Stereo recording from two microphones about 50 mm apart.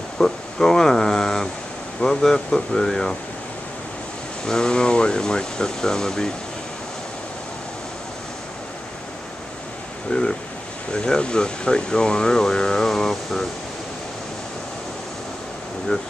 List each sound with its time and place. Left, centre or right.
0.2 s speech: centre
4.5 s speech: centre
10.1 s speech: left; by 13.5 s centre